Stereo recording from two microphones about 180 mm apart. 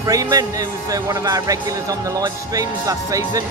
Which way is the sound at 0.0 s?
20° right (ahead or behind).